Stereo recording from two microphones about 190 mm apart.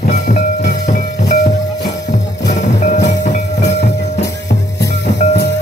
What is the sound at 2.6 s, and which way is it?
Music, 40° left (ahead or behind).